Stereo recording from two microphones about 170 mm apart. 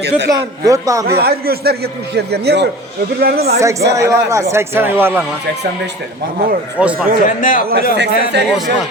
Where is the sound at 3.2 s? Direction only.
65° right (ahead or behind).